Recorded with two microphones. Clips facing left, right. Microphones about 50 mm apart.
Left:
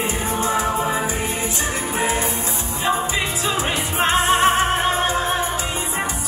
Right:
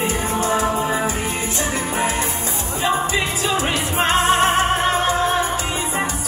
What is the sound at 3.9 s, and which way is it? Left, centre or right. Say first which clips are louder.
Music: right 1 dB; right.